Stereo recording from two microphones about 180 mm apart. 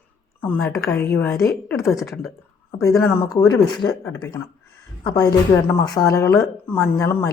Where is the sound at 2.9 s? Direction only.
15° left (ahead or behind).